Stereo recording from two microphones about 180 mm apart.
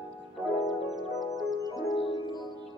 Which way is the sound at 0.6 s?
Centre (ahead or behind).